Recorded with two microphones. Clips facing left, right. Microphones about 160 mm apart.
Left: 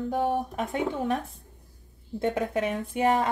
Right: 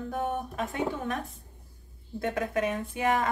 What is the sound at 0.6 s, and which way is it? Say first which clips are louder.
Speech: left 3 dB; 25° left (ahead or behind).